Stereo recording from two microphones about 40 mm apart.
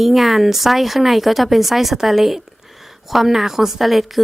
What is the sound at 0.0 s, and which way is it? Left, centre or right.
Speech, centre.